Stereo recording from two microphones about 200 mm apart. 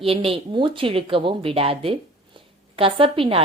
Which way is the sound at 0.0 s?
30° right (ahead or behind).